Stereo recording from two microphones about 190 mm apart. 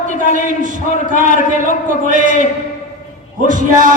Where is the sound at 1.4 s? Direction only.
45° left (ahead or behind).